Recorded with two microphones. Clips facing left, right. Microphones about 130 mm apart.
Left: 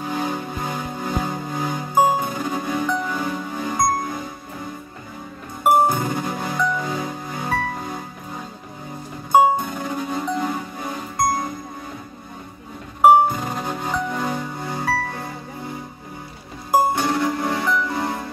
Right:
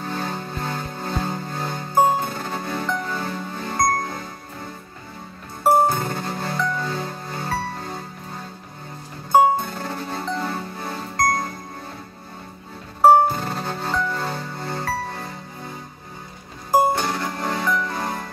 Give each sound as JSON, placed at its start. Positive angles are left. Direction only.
{"t": 0.0, "sound": "music", "side_deg": 15}
{"t": 5.6, "sound": "music", "side_deg": 15}
{"t": 9.7, "sound": "music", "side_deg": 15}
{"t": 13.0, "sound": "music", "side_deg": 15}
{"t": 16.9, "sound": "music", "side_deg": 20}